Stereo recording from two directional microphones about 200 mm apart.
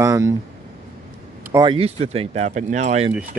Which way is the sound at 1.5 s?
20° right (ahead or behind).